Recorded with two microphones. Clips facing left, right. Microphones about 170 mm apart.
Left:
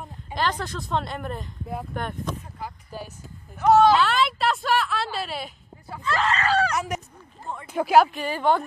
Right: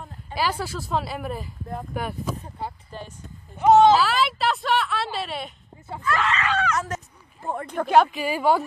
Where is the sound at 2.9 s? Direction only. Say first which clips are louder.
Left 1 dB; 5° left (ahead or behind).